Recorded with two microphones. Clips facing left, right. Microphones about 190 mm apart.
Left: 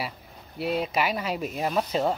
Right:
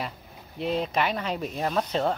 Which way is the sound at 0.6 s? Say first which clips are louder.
Even; 5° left (ahead or behind).